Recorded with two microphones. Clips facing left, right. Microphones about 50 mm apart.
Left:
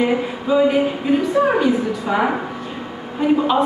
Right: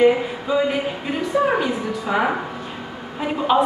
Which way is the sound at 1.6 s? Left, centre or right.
Centre.